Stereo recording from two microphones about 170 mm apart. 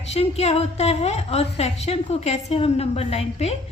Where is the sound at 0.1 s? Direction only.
40° left (ahead or behind).